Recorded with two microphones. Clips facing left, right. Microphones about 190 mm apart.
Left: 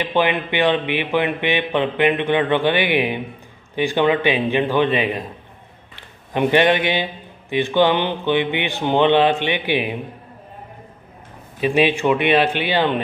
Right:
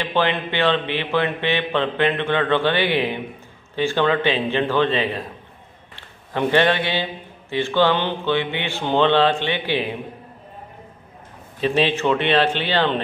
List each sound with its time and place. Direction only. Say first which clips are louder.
0.0 s a man's voice: left 2 dB; 15° left (ahead or behind)
11.6 s a man's voice: left 2 dB; 15° left (ahead or behind)